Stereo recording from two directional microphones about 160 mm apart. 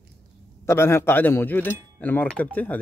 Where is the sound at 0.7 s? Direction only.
15° left (ahead or behind).